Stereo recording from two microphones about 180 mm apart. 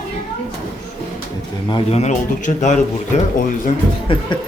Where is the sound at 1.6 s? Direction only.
25° left (ahead or behind).